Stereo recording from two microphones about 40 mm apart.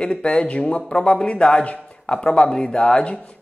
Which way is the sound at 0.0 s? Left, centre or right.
Left.